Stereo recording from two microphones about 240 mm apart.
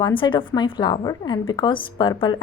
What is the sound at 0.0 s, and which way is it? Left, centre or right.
A woman's voice, centre.